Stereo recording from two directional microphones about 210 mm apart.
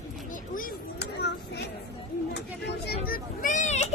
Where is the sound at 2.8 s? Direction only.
45° left (ahead or behind).